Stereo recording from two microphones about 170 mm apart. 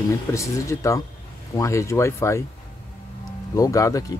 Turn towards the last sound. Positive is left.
turn(degrees=20)  # may be behind; listen again after turning